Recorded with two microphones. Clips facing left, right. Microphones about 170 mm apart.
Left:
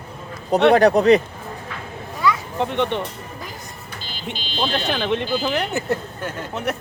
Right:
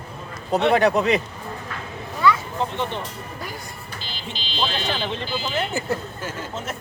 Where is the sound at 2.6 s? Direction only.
65° left (ahead or behind).